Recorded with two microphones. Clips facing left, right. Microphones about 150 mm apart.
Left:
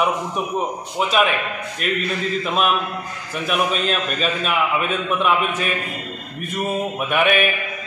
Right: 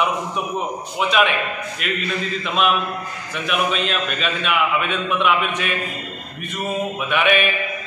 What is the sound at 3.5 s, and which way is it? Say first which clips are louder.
A man's voice: left 1 dB; 40° left (ahead or behind).